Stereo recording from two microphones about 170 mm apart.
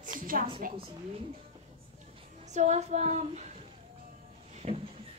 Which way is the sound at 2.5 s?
40° right (ahead or behind).